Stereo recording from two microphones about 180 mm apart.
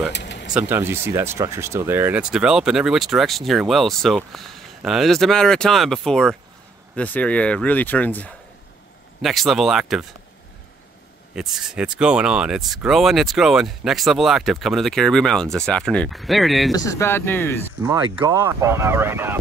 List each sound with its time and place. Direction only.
0.1 s a sound: 70° left (ahead or behind)
0.6 s speech: 10° right (ahead or behind)
11.3 s speech: 5° right (ahead or behind)
16.7 s speech: 20° left (ahead or behind)
18.1 s speech: 15° right (ahead or behind)